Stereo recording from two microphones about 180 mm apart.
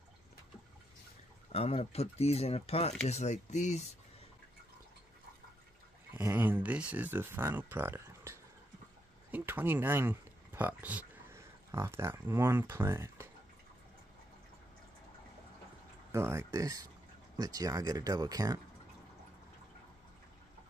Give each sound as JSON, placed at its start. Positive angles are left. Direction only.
{"t": 1.5, "sound": "speech", "side_deg": 35}
{"t": 6.1, "sound": "speech", "side_deg": -10}
{"t": 16.1, "sound": "speech", "side_deg": -15}